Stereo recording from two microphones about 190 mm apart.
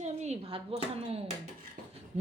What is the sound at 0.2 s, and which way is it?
A woman's voice, 35° right (ahead or behind).